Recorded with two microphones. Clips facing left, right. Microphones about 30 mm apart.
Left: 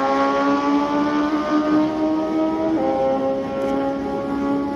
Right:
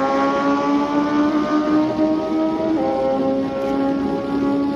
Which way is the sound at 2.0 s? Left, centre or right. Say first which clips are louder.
Right 1 dB; right.